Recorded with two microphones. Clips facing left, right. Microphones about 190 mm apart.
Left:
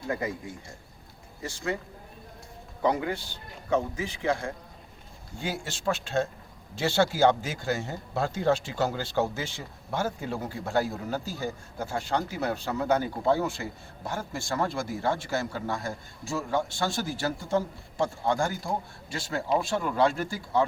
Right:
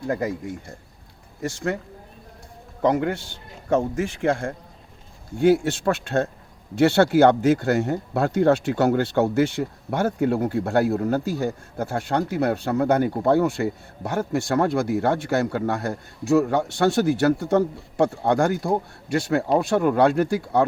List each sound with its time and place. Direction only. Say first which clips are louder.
0.1 s speech: right 5 dB; 45° right (ahead or behind)
1.4 s speech: right 6 dB; 55° right (ahead or behind)
2.8 s speech: right 6 dB; 55° right (ahead or behind)
5.4 s speech: right 16 dB; 60° right (ahead or behind)